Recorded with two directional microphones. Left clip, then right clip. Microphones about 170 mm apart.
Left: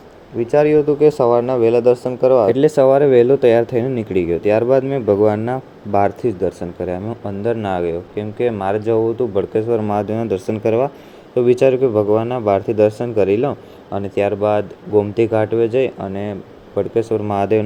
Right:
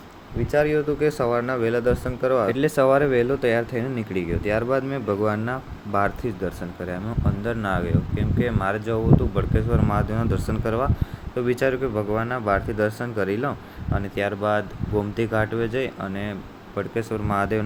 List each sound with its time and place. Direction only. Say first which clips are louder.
0.3 s speech: left 8 dB; 15° left (ahead or behind)
11.8 s speech: left 10 dB; 20° right (ahead or behind)
12.2 s speech: left 7 dB; 15° left (ahead or behind)